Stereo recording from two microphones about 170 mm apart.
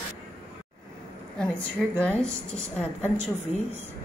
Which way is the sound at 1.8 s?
Centre (ahead or behind).